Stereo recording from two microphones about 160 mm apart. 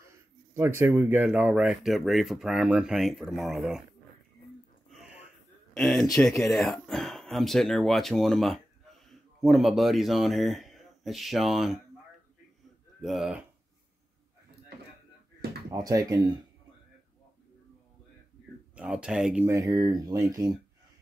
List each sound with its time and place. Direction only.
0.6 s speech: 15° right (ahead or behind)
4.9 s a sound: 5° right (ahead or behind)
5.8 s speech: centre (ahead or behind)
13.0 s speech: centre (ahead or behind)
15.7 s speech: 25° right (ahead or behind)
18.8 s speech: 5° right (ahead or behind)
19.4 s speech: 20° right (ahead or behind)